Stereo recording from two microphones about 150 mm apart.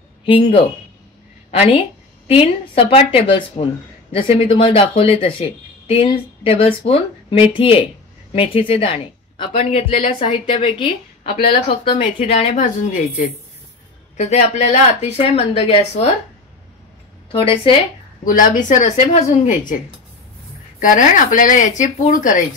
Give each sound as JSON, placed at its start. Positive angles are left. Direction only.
{"t": 0.2, "sound": "speech", "side_deg": 35}
{"t": 12.2, "sound": "speech", "side_deg": 45}
{"t": 14.1, "sound": "speech", "side_deg": 50}
{"t": 17.3, "sound": "speech", "side_deg": 35}
{"t": 18.2, "sound": "speech", "side_deg": 65}
{"t": 18.9, "sound": "speech", "side_deg": 45}
{"t": 20.8, "sound": "speech", "side_deg": 60}